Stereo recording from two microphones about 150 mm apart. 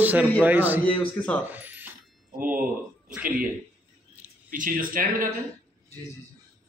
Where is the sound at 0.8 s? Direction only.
5° left (ahead or behind).